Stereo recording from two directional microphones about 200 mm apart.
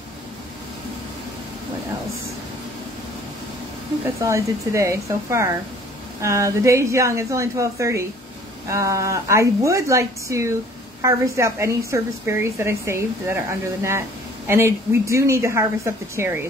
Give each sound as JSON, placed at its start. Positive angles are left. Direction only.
{"t": 4.2, "sound": "a woman's voice", "side_deg": -15}
{"t": 14.5, "sound": "a woman's voice", "side_deg": -15}